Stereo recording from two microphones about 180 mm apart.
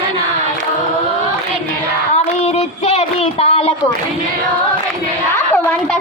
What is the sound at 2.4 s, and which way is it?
Child singing, 35° left (ahead or behind).